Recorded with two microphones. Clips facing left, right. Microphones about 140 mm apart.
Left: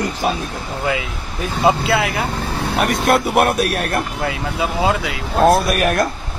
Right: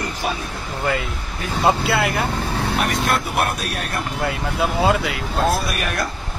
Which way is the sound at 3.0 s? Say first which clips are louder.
Left 6 dB; 60° left (ahead or behind).